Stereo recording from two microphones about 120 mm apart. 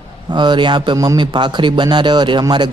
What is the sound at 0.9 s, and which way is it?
Speech, 35° right (ahead or behind).